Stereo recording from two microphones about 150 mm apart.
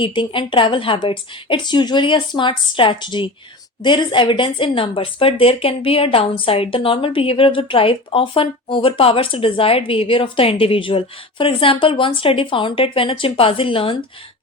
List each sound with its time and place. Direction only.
0.0 s a woman's voice: 35° left (ahead or behind)